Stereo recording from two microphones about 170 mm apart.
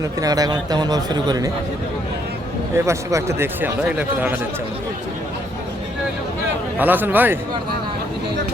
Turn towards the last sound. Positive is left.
turn(degrees=-10)  # may be behind; listen again after turning